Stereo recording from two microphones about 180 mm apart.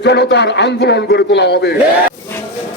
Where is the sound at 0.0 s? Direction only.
70° left (ahead or behind).